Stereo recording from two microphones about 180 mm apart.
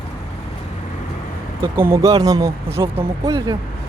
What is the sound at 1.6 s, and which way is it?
Speech, 15° right (ahead or behind).